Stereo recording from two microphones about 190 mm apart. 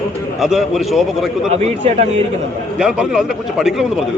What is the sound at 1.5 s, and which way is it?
Speech, 35° right (ahead or behind).